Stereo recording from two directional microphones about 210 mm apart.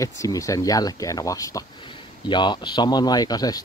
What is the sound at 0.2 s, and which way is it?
Speech, 15° left (ahead or behind).